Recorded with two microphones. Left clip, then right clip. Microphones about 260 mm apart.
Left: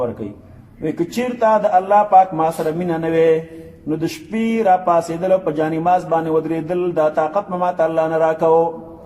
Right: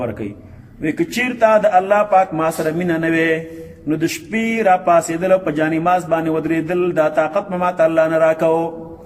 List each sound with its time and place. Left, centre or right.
0.8 s speech: right